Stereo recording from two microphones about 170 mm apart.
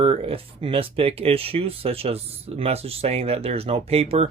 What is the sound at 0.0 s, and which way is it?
Speech, 35° right (ahead or behind).